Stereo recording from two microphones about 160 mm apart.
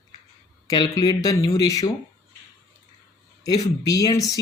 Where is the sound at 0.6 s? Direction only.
25° left (ahead or behind).